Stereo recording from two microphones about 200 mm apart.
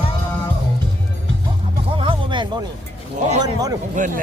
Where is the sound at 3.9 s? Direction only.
40° right (ahead or behind).